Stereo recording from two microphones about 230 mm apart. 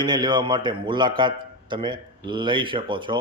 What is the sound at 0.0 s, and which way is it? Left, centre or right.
Speech, centre.